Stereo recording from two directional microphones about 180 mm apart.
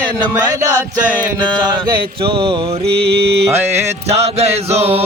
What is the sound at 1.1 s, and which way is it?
Music, 5° left (ahead or behind).